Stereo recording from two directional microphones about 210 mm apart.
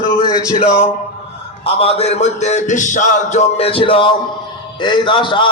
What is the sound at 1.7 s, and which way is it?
A man's voice, 30° left (ahead or behind).